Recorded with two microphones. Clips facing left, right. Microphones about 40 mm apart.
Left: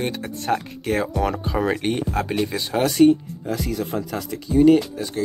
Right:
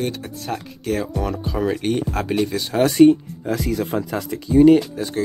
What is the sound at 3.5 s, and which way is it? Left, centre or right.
Speech, right.